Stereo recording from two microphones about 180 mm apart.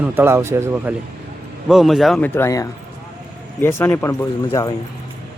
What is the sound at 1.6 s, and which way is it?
Speech, centre (ahead or behind).